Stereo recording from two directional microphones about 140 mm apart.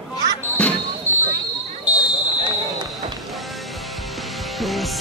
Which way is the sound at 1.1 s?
20° right (ahead or behind).